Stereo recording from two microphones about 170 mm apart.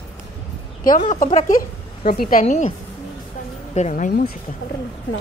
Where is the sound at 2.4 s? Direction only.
45° left (ahead or behind).